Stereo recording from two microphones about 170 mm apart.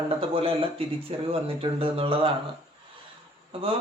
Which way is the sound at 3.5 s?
35° right (ahead or behind).